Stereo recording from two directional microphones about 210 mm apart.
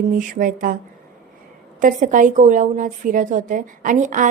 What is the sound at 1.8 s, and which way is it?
Speech, 40° right (ahead or behind).